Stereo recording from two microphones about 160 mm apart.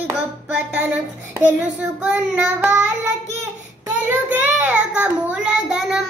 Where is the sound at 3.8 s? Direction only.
10° right (ahead or behind).